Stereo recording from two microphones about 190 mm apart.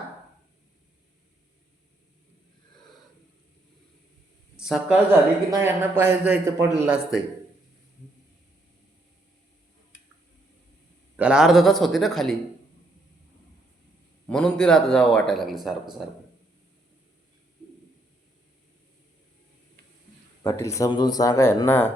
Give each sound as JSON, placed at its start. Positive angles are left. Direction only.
{"t": 4.5, "sound": "a man's voice", "side_deg": -5}
{"t": 11.2, "sound": "a man's voice", "side_deg": -5}
{"t": 14.3, "sound": "a man's voice", "side_deg": 5}
{"t": 20.4, "sound": "speech", "side_deg": 15}